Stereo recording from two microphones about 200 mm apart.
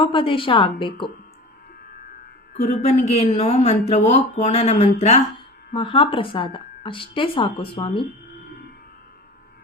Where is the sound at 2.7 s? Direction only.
35° left (ahead or behind).